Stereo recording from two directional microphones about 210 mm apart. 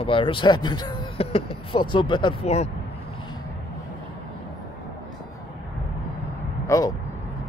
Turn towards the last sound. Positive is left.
turn(degrees=15)  # may be behind; listen again after turning